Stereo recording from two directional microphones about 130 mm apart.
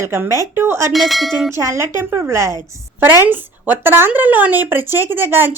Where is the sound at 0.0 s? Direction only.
20° right (ahead or behind).